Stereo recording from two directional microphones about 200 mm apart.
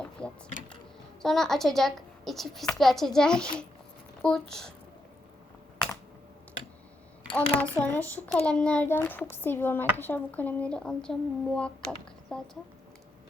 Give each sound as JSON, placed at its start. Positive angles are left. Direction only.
{"t": 0.2, "sound": "a sound", "side_deg": 5}
{"t": 1.2, "sound": "a woman's voice", "side_deg": 0}
{"t": 7.3, "sound": "a woman's voice", "side_deg": 10}